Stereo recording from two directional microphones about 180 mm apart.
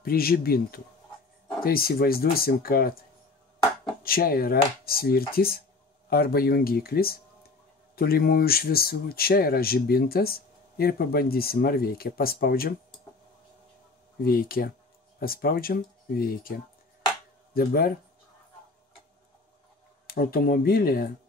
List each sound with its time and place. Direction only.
0.0 s speech: 55° left (ahead or behind)
4.0 s speech: 55° left (ahead or behind)
14.2 s speech: 55° left (ahead or behind)
17.6 s speech: 60° left (ahead or behind)
20.1 s speech: 55° left (ahead or behind)